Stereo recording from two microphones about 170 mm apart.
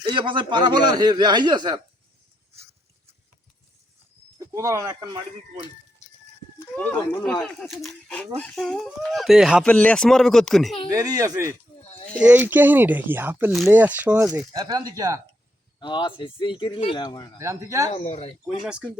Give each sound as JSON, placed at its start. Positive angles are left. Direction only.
{"t": 0.0, "sound": "speech", "side_deg": -30}
{"t": 4.4, "sound": "speech", "side_deg": -20}
{"t": 6.7, "sound": "speech", "side_deg": 10}
{"t": 10.9, "sound": "speech", "side_deg": -20}
{"t": 14.5, "sound": "speech", "side_deg": -20}
{"t": 15.8, "sound": "speech", "side_deg": 25}
{"t": 17.3, "sound": "speech", "side_deg": -15}
{"t": 17.9, "sound": "speech", "side_deg": 40}
{"t": 18.4, "sound": "speech", "side_deg": -5}